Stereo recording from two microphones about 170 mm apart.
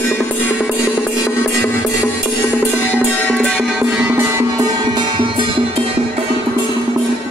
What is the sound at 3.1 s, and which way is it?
Music, 10° left (ahead or behind).